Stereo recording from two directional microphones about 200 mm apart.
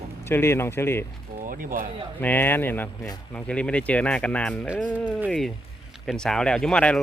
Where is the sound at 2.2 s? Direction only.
10° left (ahead or behind).